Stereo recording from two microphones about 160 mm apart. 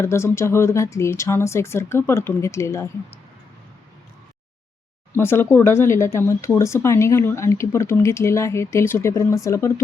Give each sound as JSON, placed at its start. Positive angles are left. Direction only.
{"t": 0.0, "sound": "speech", "side_deg": 15}
{"t": 5.1, "sound": "speech", "side_deg": 15}